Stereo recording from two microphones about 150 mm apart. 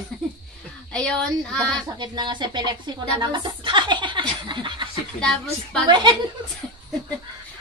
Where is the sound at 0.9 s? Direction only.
5° left (ahead or behind).